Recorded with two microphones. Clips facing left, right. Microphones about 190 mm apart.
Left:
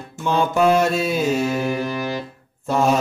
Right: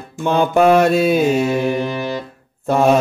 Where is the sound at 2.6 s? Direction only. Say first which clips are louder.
Right 5 dB; 55° right (ahead or behind).